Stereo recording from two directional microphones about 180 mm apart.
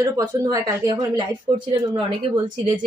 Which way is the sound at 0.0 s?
20° right (ahead or behind).